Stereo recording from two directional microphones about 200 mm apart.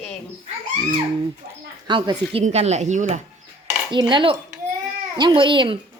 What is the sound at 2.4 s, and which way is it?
Speech, 35° right (ahead or behind).